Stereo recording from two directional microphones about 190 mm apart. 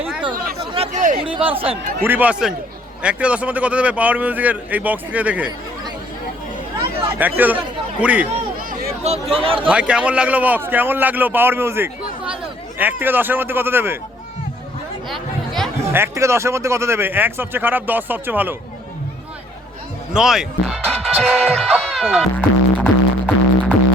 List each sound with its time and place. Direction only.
0.7 s chatter: 35° right (ahead or behind)
1.2 s speech: 30° right (ahead or behind)
2.0 s a man's voice: 10° right (ahead or behind)
7.2 s a man's voice: 10° right (ahead or behind)
9.2 s speech: 30° right (ahead or behind)
9.6 s a man's voice: 5° right (ahead or behind)
15.1 s chatter: centre (ahead or behind)
15.9 s a man's voice: 15° right (ahead or behind)
20.1 s speech: 5° right (ahead or behind)